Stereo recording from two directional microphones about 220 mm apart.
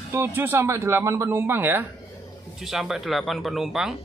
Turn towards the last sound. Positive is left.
turn(degrees=0)  # may be behind; listen again after turning